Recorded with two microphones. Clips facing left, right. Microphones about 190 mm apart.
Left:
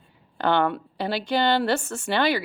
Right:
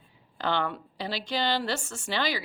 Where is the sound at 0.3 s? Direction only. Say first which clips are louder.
Left 7 dB; 55° left (ahead or behind).